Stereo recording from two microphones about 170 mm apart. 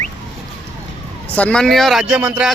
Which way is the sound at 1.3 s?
5° left (ahead or behind).